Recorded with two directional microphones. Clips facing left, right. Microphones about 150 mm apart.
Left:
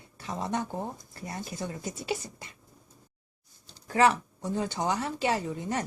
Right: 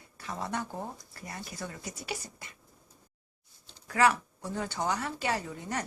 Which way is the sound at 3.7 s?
25° left (ahead or behind).